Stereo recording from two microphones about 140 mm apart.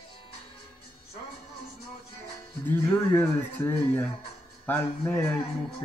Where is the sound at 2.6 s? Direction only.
15° left (ahead or behind).